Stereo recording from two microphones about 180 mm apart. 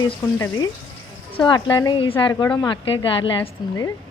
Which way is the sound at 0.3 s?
15° left (ahead or behind).